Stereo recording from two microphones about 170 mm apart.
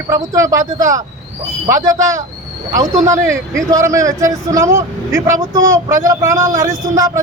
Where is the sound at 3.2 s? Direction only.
15° right (ahead or behind).